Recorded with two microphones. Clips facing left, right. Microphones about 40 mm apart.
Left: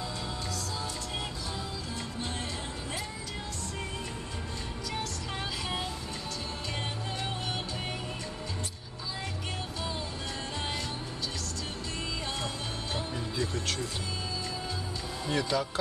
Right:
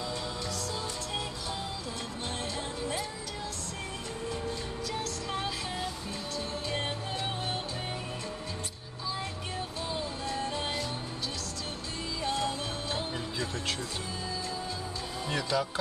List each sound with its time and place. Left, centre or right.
12.4 s music: right
15.3 s speech: centre